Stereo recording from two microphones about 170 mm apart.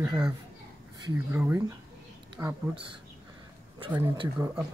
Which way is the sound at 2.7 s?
30° right (ahead or behind).